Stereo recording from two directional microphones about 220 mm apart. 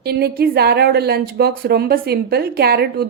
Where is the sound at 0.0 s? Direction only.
45° right (ahead or behind).